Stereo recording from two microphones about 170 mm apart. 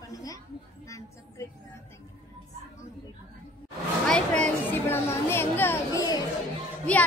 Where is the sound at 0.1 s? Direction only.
20° left (ahead or behind).